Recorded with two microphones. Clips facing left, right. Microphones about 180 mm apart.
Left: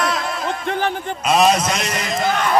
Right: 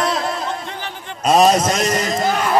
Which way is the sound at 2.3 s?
5° right (ahead or behind).